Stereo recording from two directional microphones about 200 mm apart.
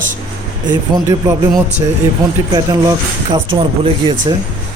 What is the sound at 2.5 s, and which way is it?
A man's voice, 20° right (ahead or behind).